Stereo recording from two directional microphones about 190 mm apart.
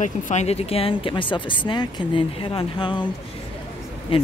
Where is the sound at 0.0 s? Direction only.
40° left (ahead or behind).